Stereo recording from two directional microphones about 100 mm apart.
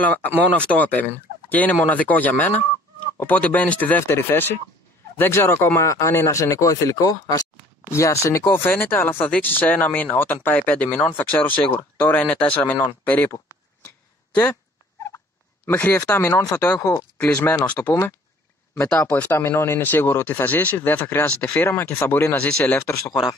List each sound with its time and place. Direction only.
0.6 s speech: 15° left (ahead or behind)
15.1 s fowl: 20° left (ahead or behind)
16.7 s speech: 30° left (ahead or behind)
17.2 s speech: 15° left (ahead or behind)